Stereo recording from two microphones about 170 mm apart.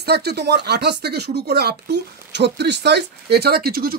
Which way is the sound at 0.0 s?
75° right (ahead or behind).